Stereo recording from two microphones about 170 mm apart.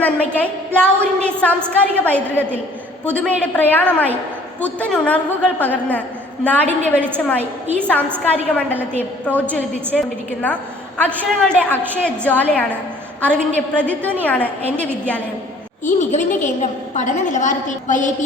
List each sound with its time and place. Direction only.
0.0 s a woman's voice: 10° left (ahead or behind)
6.9 s a woman's voice: 10° right (ahead or behind)
7.2 s a woman's voice: 10° left (ahead or behind)
15.8 s a woman's voice: 45° left (ahead or behind)